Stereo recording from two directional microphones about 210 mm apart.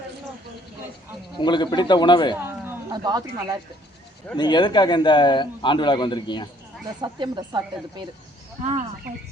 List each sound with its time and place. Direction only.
1.4 s a man's voice: 20° left (ahead or behind)
2.3 s speech: 10° right (ahead or behind)
4.4 s a man's voice: 20° left (ahead or behind)
7.0 s speech: 20° right (ahead or behind)